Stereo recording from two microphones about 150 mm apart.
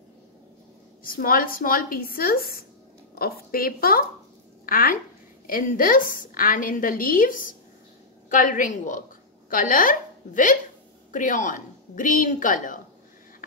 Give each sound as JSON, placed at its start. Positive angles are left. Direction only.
{"t": 1.0, "sound": "a woman's voice", "side_deg": 70}